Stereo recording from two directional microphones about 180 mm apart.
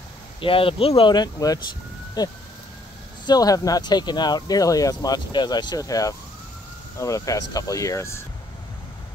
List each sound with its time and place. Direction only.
0.4 s speech: 30° left (ahead or behind)